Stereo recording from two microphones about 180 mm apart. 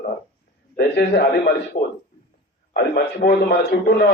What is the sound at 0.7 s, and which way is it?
Speech, 65° left (ahead or behind).